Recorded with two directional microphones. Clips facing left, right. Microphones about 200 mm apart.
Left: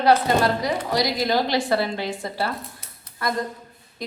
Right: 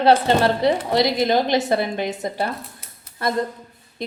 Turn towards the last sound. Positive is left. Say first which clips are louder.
# right 3 dB
turn(degrees=-25)  # may be behind; listen again after turning